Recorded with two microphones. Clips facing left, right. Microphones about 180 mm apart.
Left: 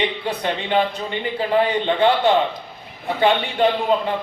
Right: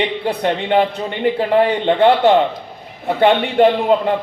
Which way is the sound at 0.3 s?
60° right (ahead or behind).